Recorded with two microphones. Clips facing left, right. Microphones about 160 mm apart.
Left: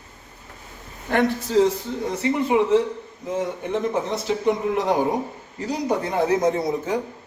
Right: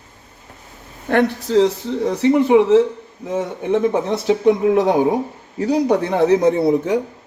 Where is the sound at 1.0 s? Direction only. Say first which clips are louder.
Right 4 dB; 65° right (ahead or behind); by 2.8 s 85° right.